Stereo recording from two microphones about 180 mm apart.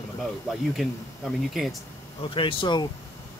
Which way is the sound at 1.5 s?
Centre (ahead or behind).